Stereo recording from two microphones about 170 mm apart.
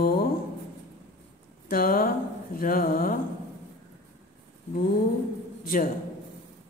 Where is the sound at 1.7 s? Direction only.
55° left (ahead or behind).